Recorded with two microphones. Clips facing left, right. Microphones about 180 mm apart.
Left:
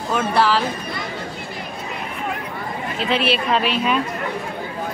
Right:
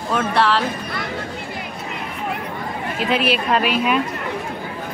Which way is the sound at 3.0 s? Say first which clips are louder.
Right 1 dB; 5° right (ahead or behind).